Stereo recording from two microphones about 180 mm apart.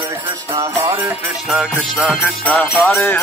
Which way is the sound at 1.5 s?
5° right (ahead or behind).